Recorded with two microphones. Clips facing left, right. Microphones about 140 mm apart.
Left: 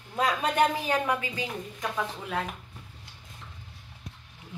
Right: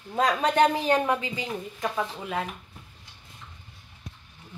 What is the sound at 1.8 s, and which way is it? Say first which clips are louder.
Speech: right 2 dB; 5° right (ahead or behind).